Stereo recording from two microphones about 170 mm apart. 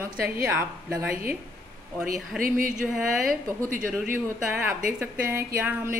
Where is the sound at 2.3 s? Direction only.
55° right (ahead or behind).